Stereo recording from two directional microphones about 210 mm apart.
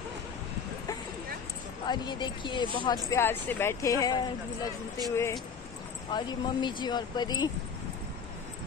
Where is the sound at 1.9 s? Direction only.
20° left (ahead or behind).